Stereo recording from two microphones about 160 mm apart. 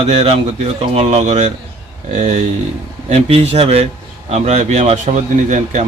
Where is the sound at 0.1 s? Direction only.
40° right (ahead or behind).